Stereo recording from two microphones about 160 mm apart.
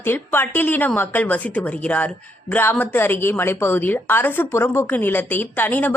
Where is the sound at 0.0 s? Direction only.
15° left (ahead or behind).